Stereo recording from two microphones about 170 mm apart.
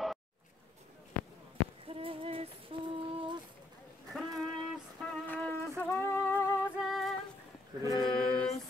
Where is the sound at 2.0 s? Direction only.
35° right (ahead or behind).